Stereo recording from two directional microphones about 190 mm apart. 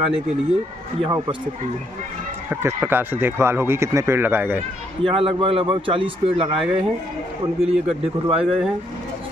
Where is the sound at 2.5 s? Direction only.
10° right (ahead or behind).